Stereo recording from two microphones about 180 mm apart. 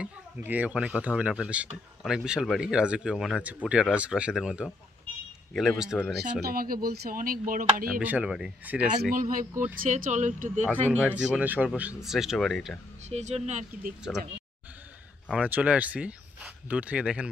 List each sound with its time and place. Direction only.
0.0 s speech: 10° right (ahead or behind)
6.4 s speech: 55° right (ahead or behind)
8.0 s speech: 10° right (ahead or behind)
9.1 s speech: 50° right (ahead or behind)
10.9 s speech: 10° right (ahead or behind)
13.1 s speech: 40° right (ahead or behind)
15.2 s speech: 10° right (ahead or behind)